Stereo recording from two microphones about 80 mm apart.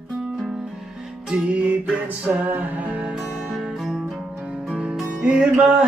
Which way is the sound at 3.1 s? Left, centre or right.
Centre.